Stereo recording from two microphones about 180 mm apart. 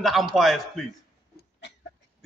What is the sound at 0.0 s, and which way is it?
Speech, centre (ahead or behind).